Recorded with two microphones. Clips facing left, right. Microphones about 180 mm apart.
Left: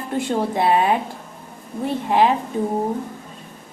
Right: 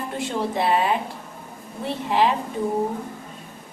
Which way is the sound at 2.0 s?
50° left (ahead or behind).